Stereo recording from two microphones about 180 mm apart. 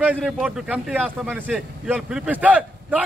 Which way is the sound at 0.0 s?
5° right (ahead or behind).